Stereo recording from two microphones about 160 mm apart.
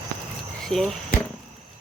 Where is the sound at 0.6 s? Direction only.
Centre (ahead or behind).